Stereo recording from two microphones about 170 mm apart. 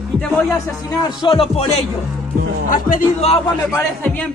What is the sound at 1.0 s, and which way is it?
Speech, 30° left (ahead or behind).